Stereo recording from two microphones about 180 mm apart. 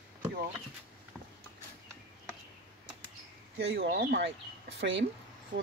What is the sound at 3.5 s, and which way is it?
Speech, 70° right (ahead or behind).